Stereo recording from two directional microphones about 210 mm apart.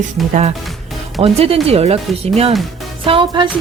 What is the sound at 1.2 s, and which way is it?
Speech, 25° right (ahead or behind).